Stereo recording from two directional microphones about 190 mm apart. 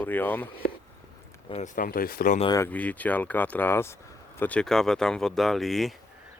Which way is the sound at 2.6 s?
10° left (ahead or behind).